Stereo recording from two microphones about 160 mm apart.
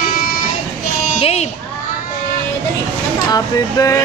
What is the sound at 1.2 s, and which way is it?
Speech, 40° left (ahead or behind).